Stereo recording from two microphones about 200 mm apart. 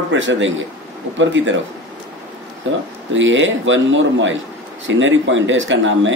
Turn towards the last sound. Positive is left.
turn(degrees=-70)  # may be behind; listen again after turning